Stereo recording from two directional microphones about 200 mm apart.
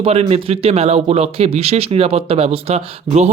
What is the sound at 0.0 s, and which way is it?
A woman's voice, 30° right (ahead or behind).